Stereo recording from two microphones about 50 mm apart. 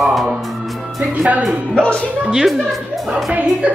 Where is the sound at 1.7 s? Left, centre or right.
Centre.